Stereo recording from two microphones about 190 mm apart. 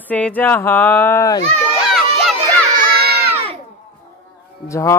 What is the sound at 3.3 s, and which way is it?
Crowd, 30° right (ahead or behind).